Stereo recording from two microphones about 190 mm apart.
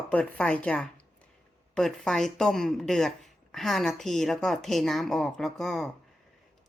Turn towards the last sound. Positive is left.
turn(degrees=0)  # may be behind; listen again after turning